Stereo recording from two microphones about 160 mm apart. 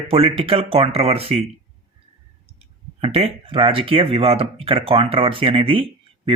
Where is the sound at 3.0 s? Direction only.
40° right (ahead or behind).